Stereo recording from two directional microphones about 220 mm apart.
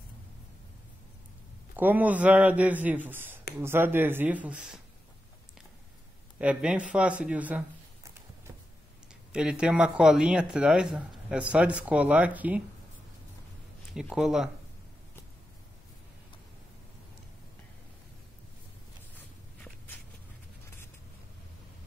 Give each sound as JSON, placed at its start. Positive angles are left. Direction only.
{"t": 1.8, "sound": "a man's voice", "side_deg": -10}
{"t": 6.3, "sound": "a man's voice", "side_deg": -5}
{"t": 6.9, "sound": "a sound", "side_deg": -5}
{"t": 9.3, "sound": "a man's voice", "side_deg": -5}
{"t": 13.9, "sound": "a man's voice", "side_deg": -5}
{"t": 19.1, "sound": "a sound", "side_deg": 10}